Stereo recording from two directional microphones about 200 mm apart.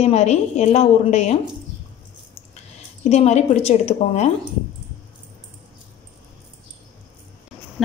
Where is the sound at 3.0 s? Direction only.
35° left (ahead or behind).